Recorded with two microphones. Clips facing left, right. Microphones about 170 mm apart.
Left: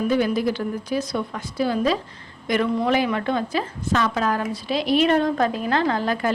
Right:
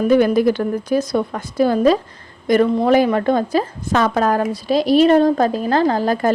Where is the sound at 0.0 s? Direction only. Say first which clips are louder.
Right 7 dB; 50° right (ahead or behind).